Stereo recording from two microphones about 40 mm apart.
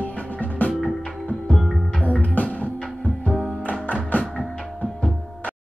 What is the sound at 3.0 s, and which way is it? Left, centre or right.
Music, left.